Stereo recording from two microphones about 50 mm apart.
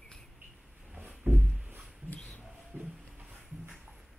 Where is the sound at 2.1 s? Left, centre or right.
Left.